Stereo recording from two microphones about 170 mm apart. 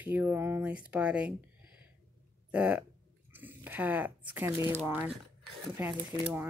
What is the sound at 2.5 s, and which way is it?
Speech, 5° right (ahead or behind).